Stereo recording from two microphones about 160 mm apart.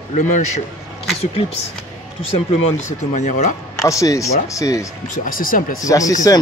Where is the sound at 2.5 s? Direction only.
45° left (ahead or behind).